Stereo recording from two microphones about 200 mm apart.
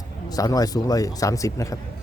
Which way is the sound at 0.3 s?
20° left (ahead or behind).